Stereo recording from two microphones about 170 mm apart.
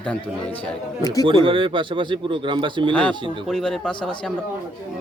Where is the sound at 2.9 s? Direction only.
5° left (ahead or behind).